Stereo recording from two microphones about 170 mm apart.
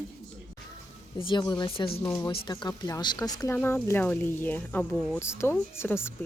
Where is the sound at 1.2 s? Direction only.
25° left (ahead or behind).